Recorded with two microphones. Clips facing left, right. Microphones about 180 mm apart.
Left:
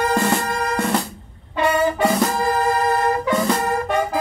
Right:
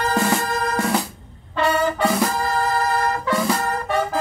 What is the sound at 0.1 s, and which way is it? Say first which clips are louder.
Music: left 1 dB; centre (ahead or behind).